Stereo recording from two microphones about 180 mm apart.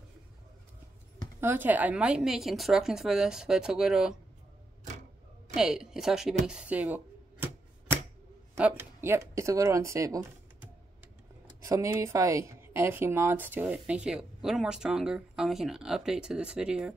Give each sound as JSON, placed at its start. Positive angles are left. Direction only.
{"t": 1.4, "sound": "a woman's voice", "side_deg": -10}
{"t": 5.6, "sound": "a woman's voice", "side_deg": 0}
{"t": 8.5, "sound": "speech", "side_deg": -10}
{"t": 11.6, "sound": "a woman's voice", "side_deg": -20}